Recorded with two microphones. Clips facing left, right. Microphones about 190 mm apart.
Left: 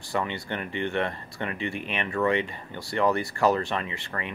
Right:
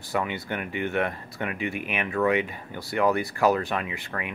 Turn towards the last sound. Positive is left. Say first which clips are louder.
# right 1 dB
turn(degrees=0)  # may be behind; listen again after turning